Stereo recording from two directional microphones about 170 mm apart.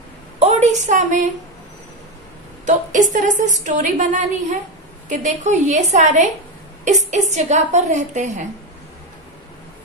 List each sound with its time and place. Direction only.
0.4 s a woman's voice: 40° right (ahead or behind)
2.6 s a woman's voice: 45° right (ahead or behind)